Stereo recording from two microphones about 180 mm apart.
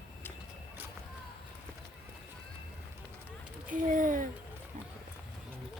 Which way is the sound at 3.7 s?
45° right (ahead or behind).